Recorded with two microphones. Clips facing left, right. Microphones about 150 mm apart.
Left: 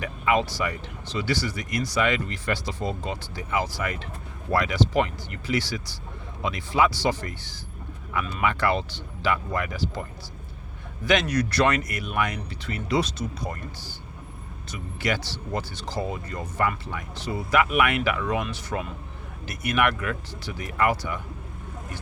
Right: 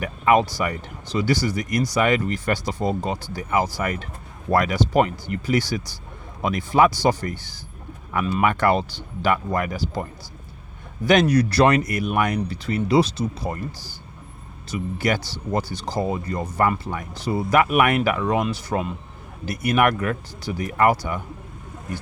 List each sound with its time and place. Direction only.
0.3 s speech: 45° right (ahead or behind)
11.0 s speech: 40° right (ahead or behind)
14.7 s speech: 40° right (ahead or behind)